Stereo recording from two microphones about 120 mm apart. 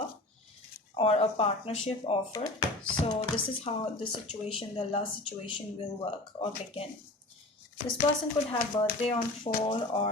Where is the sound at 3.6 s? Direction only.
55° left (ahead or behind).